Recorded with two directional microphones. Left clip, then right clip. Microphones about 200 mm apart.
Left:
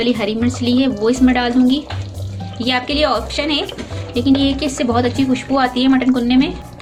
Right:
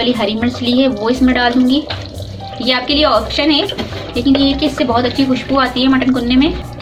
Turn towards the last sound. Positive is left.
turn(degrees=50)  # may be behind; listen again after turning